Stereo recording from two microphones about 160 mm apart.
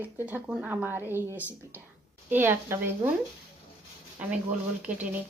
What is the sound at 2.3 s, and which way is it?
Speech, 15° right (ahead or behind).